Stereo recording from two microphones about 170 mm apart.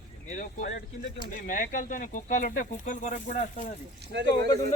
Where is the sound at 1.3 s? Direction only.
50° left (ahead or behind).